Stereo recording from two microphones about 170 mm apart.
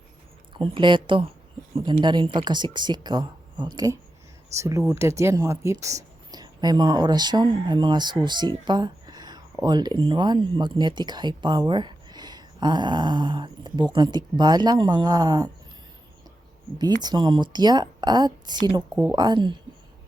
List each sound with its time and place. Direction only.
0.5 s speech: 30° right (ahead or behind)
16.7 s speech: 25° right (ahead or behind)